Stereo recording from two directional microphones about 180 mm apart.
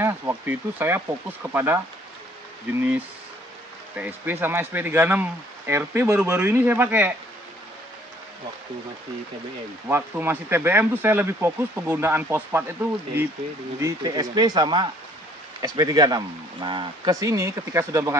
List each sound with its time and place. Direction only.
0.0 s speech: 15° right (ahead or behind)
3.9 s speech: 10° right (ahead or behind)
9.8 s speech: 10° right (ahead or behind)
13.7 s speech: 20° right (ahead or behind)